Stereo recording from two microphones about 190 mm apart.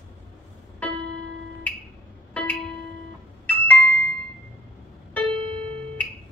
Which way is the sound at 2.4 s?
5° left (ahead or behind).